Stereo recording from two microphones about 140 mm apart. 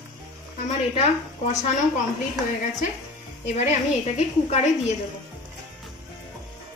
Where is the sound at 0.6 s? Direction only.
50° left (ahead or behind).